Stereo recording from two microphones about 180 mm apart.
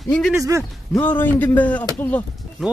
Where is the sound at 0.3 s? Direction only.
15° right (ahead or behind).